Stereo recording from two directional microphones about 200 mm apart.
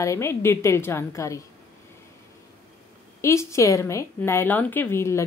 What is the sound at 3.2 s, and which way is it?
A woman's voice, 15° left (ahead or behind).